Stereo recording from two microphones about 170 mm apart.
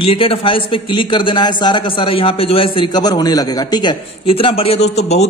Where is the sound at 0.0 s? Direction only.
30° left (ahead or behind).